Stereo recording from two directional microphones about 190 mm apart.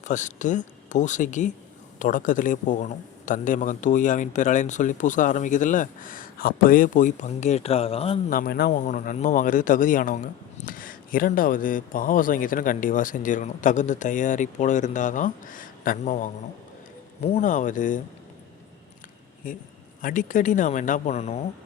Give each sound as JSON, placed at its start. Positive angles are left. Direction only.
{"t": 0.0, "sound": "a man's voice", "side_deg": 40}
{"t": 8.3, "sound": "a man's voice", "side_deg": 50}
{"t": 20.0, "sound": "speech", "side_deg": 45}